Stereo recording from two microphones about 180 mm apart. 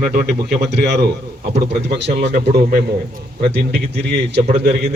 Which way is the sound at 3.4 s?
65° right (ahead or behind).